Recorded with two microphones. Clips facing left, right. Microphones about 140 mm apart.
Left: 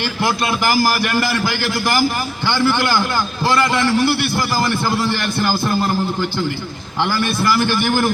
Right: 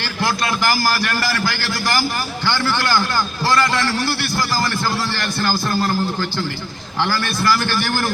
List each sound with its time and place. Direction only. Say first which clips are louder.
0.0 s a man's voice: left 2 dB; 20° left (ahead or behind)